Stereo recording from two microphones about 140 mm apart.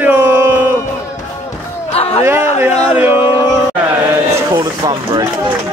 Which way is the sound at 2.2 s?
15° right (ahead or behind).